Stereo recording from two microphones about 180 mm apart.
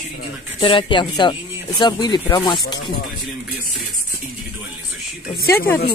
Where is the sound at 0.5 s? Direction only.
30° left (ahead or behind).